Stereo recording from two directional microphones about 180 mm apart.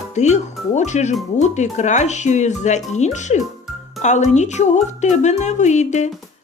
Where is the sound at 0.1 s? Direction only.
40° left (ahead or behind).